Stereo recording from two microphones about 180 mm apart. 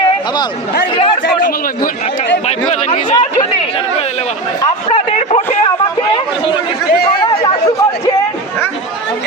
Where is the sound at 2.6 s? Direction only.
40° left (ahead or behind).